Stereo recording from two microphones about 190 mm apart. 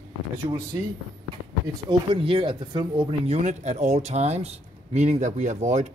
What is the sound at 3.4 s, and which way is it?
Speech, 40° right (ahead or behind).